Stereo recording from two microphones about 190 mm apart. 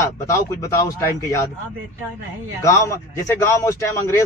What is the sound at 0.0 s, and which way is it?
A man's voice, 15° left (ahead or behind).